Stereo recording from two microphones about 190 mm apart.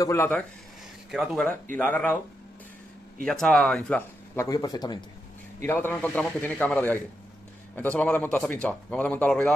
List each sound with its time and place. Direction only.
0.0 s a man's voice: 15° left (ahead or behind)
1.1 s a man's voice: centre (ahead or behind)
3.3 s speech: centre (ahead or behind)
4.5 s a man's voice: 20° left (ahead or behind)